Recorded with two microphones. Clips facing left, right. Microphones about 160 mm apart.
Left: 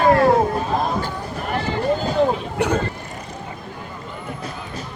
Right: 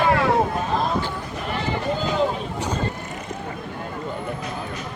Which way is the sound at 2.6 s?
65° left (ahead or behind).